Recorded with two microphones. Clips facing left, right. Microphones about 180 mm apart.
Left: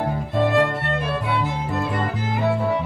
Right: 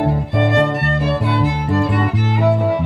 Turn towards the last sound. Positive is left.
turn(degrees=-80)